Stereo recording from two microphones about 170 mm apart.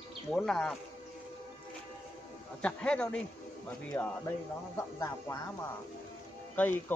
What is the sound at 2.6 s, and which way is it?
Speech, 5° left (ahead or behind).